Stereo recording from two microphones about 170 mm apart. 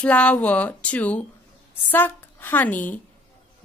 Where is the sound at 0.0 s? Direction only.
5° left (ahead or behind).